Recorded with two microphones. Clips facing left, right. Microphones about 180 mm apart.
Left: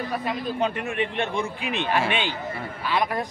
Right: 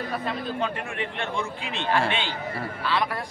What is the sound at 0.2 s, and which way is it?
A man's voice, 15° left (ahead or behind).